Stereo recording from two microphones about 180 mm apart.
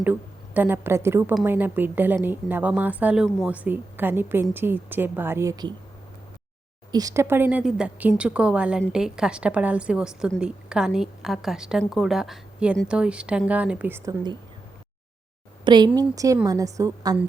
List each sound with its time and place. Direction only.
0.0 s a woman's voice: 10° right (ahead or behind)
6.9 s a woman's voice: 20° right (ahead or behind)
15.6 s a woman's voice: 25° right (ahead or behind)